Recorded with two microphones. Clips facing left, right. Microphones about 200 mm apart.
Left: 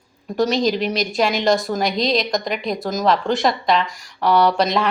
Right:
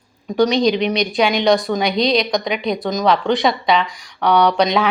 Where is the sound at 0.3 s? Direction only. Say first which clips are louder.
Right 3 dB; centre (ahead or behind).